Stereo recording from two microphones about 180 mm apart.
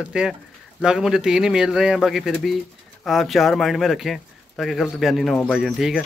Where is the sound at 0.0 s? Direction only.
5° right (ahead or behind).